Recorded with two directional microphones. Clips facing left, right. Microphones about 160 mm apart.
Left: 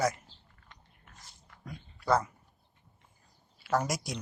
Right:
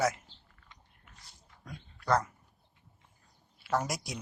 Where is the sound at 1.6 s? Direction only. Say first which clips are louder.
Left 2 dB; 5° left (ahead or behind).